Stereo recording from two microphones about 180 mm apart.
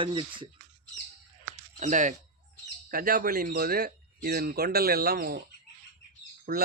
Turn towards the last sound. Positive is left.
turn(degrees=-50)  # may be behind; listen again after turning